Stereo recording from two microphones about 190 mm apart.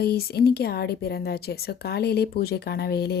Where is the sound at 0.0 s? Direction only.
55° left (ahead or behind).